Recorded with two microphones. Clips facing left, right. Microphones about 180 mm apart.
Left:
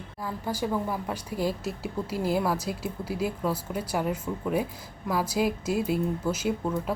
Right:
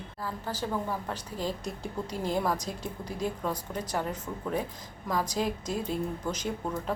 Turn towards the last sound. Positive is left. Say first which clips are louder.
# left 5 dB
turn(degrees=5)  # may be behind; listen again after turning